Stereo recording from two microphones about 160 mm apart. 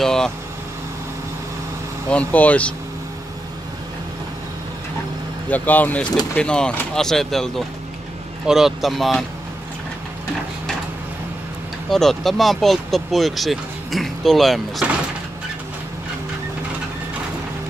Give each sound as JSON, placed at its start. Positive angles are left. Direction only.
{"t": 0.0, "sound": "speech", "side_deg": 5}
{"t": 2.0, "sound": "speech", "side_deg": 10}
{"t": 5.5, "sound": "speech", "side_deg": 10}
{"t": 11.9, "sound": "speech", "side_deg": 0}